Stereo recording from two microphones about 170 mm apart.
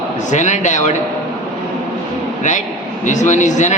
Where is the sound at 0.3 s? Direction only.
45° left (ahead or behind).